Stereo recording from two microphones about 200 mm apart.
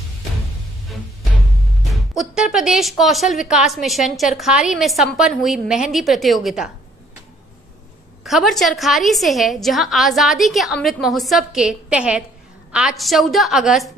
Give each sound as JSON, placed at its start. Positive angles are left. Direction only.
{"t": 2.0, "sound": "speech", "side_deg": 0}
{"t": 8.2, "sound": "speech", "side_deg": 0}